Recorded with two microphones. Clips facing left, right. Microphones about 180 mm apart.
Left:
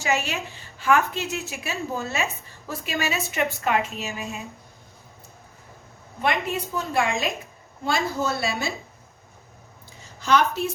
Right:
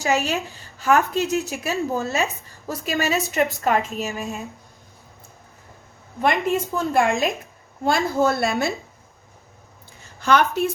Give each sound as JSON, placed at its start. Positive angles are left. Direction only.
{"t": 0.0, "sound": "a woman's voice", "side_deg": -40}
{"t": 4.2, "sound": "a woman's voice", "side_deg": 0}
{"t": 6.2, "sound": "a woman's voice", "side_deg": -50}
{"t": 10.2, "sound": "speech", "side_deg": -55}